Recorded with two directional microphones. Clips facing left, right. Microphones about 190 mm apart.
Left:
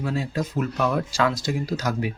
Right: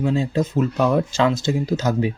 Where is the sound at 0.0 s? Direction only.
25° right (ahead or behind).